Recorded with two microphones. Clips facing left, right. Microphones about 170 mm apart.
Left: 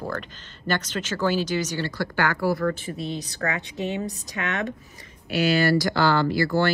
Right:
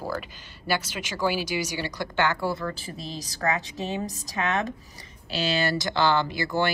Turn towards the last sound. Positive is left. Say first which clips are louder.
# left 5 dB
turn(degrees=-15)  # may be behind; listen again after turning